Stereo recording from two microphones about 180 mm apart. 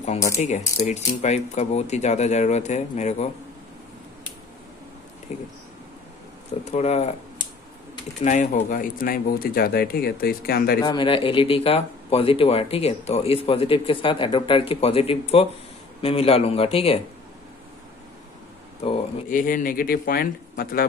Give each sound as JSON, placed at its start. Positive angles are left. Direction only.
{"t": 0.0, "sound": "speech", "side_deg": 40}
{"t": 5.3, "sound": "speech", "side_deg": 35}
{"t": 6.6, "sound": "speech", "side_deg": 35}
{"t": 8.2, "sound": "speech", "side_deg": 45}
{"t": 10.8, "sound": "speech", "side_deg": 25}
{"t": 19.2, "sound": "speech", "side_deg": 50}